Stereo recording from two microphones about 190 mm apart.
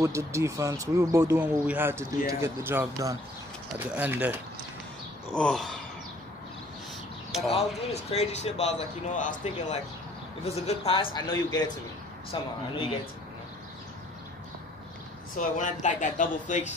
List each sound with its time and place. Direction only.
0.0 s speech: 15° right (ahead or behind)
5.3 s a sound: 5° left (ahead or behind)
7.5 s a man's voice: 35° left (ahead or behind)
11.1 s speech: 20° left (ahead or behind)
15.3 s a man's voice: 40° left (ahead or behind)